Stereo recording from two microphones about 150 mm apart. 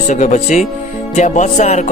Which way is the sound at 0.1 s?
55° left (ahead or behind).